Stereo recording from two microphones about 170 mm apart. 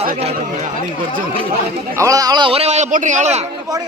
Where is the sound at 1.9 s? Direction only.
20° right (ahead or behind); by 3.4 s 45° right (ahead or behind).